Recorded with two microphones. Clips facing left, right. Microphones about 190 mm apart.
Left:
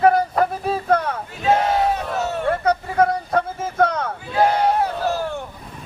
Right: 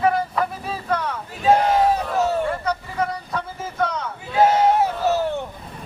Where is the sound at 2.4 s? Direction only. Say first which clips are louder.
Left 5 dB; 60° left (ahead or behind).